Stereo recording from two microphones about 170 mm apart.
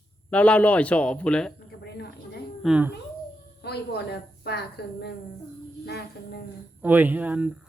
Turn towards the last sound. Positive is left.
turn(degrees=-10)  # may be behind; listen again after turning